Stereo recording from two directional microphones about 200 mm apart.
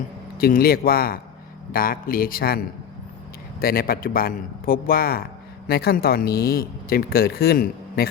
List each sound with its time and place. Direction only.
0.3 s speech: 50° left (ahead or behind)
3.6 s speech: 50° left (ahead or behind)